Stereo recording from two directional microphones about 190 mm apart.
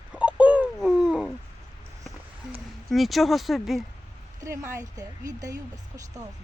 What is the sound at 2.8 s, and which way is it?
Speech, centre (ahead or behind).